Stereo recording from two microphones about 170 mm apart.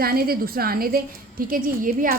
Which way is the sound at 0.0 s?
60° right (ahead or behind).